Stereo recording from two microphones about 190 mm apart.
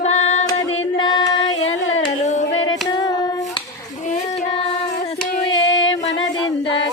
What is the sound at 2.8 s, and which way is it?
Hands, 20° left (ahead or behind).